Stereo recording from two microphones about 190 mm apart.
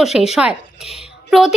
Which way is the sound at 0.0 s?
Centre (ahead or behind).